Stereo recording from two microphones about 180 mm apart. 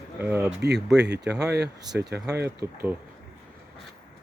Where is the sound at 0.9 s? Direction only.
70° right (ahead or behind).